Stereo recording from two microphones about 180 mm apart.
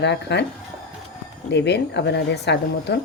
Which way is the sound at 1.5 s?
70° left (ahead or behind).